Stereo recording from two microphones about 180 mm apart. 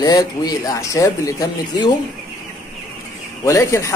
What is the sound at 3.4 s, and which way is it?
Speech, 15° left (ahead or behind).